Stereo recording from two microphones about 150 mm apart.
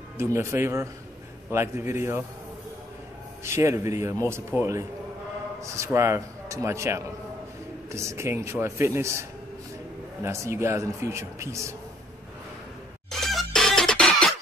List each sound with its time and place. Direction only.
0.2 s a man's voice: 15° right (ahead or behind)
3.4 s a man's voice: 20° right (ahead or behind)
10.2 s a man's voice: 20° right (ahead or behind)
13.3 s music: 5° left (ahead or behind)